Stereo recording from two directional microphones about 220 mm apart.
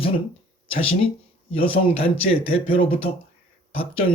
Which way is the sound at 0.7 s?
25° left (ahead or behind).